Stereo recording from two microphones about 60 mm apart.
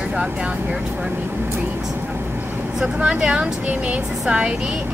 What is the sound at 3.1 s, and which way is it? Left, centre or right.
A woman's voice, right.